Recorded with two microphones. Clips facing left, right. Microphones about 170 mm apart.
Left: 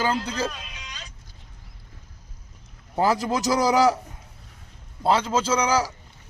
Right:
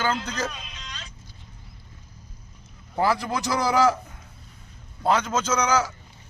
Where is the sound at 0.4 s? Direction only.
5° left (ahead or behind).